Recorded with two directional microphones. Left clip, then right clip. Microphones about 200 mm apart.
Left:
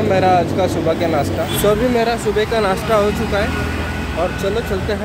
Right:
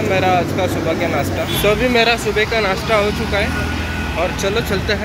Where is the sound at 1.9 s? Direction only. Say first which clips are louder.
Right 3 dB; 15° left (ahead or behind).